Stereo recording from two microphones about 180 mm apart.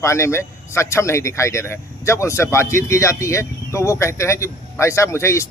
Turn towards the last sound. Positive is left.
turn(degrees=15)  # may be behind; listen again after turning